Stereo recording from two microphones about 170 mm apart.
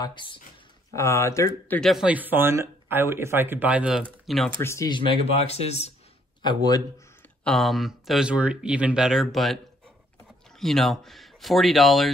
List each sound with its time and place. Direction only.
0.0 s speech: 25° left (ahead or behind)
0.9 s speech: 15° left (ahead or behind)
1.8 s speech: centre (ahead or behind)
4.6 s speech: 15° left (ahead or behind); by 5.9 s 40° left (ahead or behind)
6.4 s speech: 25° left (ahead or behind)
7.4 s speech: centre (ahead or behind)
10.6 s speech: centre (ahead or behind)